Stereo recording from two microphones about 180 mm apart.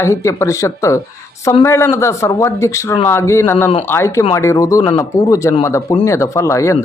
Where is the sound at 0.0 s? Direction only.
15° left (ahead or behind).